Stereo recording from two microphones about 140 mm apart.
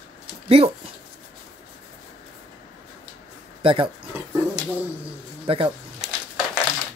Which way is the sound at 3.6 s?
40° right (ahead or behind).